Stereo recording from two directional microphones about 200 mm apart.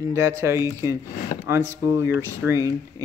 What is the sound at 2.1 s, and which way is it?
Speech, 15° right (ahead or behind).